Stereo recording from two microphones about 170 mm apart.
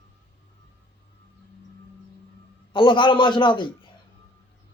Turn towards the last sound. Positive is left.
turn(degrees=30)  # may be behind; listen again after turning